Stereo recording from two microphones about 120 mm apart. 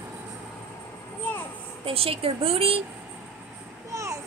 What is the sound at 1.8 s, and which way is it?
Speech, 55° right (ahead or behind).